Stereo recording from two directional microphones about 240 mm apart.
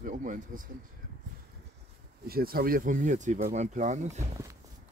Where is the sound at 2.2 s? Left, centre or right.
Right.